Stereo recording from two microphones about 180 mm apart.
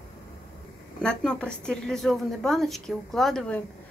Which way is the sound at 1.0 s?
5° left (ahead or behind).